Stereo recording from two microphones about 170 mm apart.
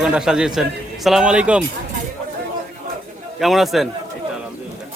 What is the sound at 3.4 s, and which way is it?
Speech, centre (ahead or behind).